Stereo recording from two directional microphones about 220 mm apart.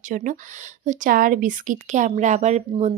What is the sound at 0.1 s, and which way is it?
Speech, 35° right (ahead or behind).